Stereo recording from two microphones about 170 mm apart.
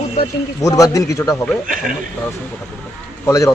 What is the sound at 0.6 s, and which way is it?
Speech, 20° left (ahead or behind).